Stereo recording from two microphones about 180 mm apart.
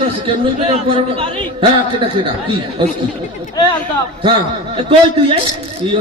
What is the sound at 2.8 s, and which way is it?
Speech, 25° right (ahead or behind).